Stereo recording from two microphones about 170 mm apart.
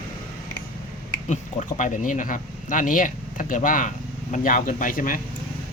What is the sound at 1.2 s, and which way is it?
Speech, 45° left (ahead or behind).